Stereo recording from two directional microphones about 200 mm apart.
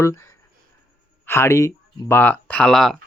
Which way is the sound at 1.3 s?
15° left (ahead or behind).